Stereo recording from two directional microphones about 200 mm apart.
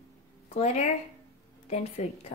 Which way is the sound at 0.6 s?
35° left (ahead or behind).